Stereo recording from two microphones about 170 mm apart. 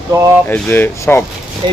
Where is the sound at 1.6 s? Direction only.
30° right (ahead or behind).